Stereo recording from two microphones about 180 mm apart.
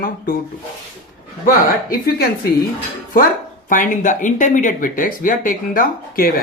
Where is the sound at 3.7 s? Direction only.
45° left (ahead or behind).